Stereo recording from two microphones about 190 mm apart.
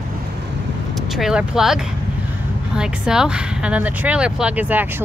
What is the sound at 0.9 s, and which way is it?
Speech, centre (ahead or behind).